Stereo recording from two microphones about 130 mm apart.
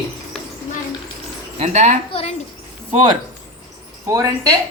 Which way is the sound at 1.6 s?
65° right (ahead or behind).